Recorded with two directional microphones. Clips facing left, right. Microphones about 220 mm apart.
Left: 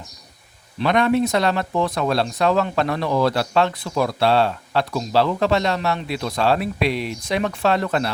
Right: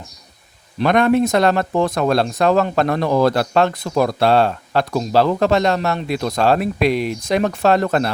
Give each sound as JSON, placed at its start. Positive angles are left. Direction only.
{"t": 0.8, "sound": "speech", "side_deg": -50}